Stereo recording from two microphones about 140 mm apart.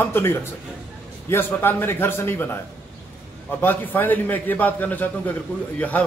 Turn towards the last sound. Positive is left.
turn(degrees=10)  # may be behind; listen again after turning